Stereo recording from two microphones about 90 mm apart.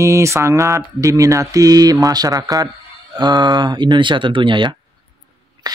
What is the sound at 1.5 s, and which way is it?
Mantra, 45° right (ahead or behind).